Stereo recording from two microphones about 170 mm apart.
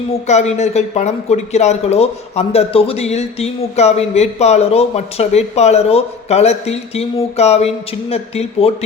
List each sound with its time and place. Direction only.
0.3 s speech: 40° left (ahead or behind)